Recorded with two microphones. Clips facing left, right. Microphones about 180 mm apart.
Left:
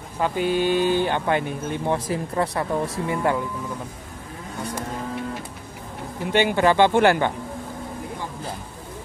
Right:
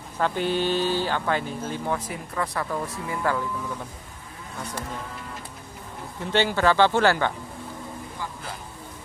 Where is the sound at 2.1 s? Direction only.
30° left (ahead or behind).